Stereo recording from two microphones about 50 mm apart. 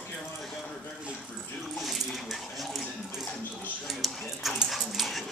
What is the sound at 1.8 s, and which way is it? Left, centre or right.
Speech, centre.